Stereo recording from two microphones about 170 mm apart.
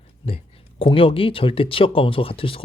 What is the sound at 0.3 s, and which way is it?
Speech, 35° left (ahead or behind).